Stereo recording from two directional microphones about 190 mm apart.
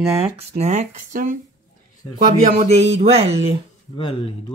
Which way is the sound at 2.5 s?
35° right (ahead or behind).